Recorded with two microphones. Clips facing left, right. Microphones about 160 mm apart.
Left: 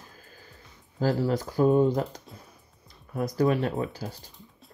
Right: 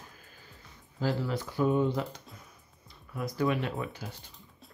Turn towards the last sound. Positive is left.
turn(degrees=35)  # may be behind; listen again after turning